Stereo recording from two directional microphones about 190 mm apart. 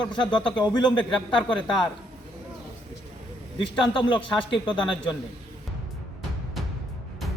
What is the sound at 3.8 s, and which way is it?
A man's voice, 25° left (ahead or behind).